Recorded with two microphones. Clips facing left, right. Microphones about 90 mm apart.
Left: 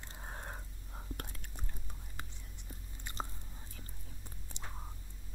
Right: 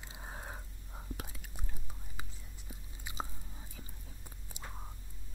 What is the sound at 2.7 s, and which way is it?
Chewing, 5° right (ahead or behind).